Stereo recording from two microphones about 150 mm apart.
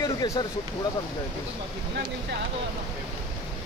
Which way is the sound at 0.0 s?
25° left (ahead or behind).